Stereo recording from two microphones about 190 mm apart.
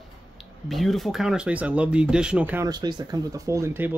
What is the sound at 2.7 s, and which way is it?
Speech, 20° right (ahead or behind).